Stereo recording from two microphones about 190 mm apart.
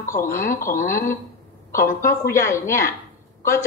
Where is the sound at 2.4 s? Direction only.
15° left (ahead or behind).